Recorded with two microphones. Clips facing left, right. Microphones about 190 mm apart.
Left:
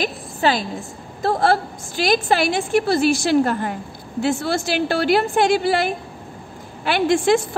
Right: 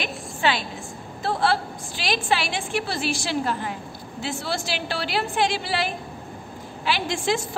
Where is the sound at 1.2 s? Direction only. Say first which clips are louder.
Left 5 dB; 45° left (ahead or behind).